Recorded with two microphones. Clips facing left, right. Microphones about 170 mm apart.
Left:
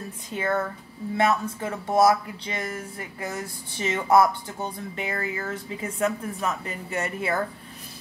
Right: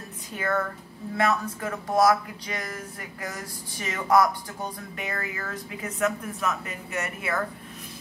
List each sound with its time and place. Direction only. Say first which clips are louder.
0.4 s speech: left 1 dB; 25° left (ahead or behind)